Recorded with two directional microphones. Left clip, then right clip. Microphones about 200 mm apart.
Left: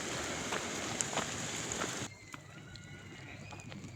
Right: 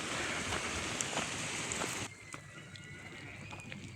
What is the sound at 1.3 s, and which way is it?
Rain on surface, 60° left (ahead or behind).